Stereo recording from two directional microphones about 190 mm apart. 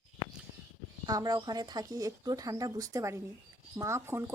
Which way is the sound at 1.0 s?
20° right (ahead or behind).